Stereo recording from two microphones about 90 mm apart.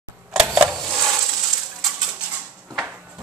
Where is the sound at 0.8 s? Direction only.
30° right (ahead or behind).